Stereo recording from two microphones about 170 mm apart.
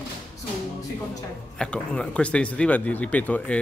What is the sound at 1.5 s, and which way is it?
Speech, 5° left (ahead or behind).